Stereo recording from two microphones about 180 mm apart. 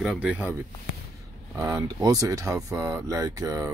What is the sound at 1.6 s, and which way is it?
Speech, 20° right (ahead or behind).